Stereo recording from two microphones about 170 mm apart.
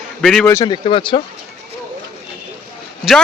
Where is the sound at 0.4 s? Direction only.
20° left (ahead or behind).